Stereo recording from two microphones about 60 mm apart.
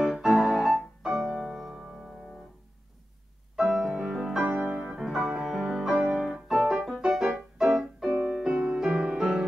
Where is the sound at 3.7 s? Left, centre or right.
Centre.